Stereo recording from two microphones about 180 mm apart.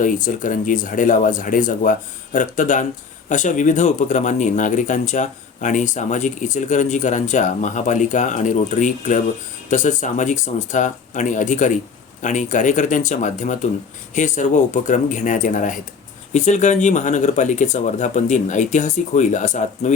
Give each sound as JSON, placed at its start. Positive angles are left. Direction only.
{"t": 0.0, "sound": "speech", "side_deg": 45}